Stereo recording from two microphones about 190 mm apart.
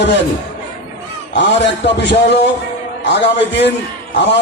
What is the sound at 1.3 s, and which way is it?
A man's voice, 65° left (ahead or behind).